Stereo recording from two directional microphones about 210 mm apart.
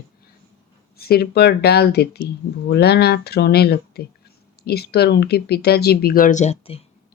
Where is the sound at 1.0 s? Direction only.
45° left (ahead or behind); by 6.9 s 30° left (ahead or behind).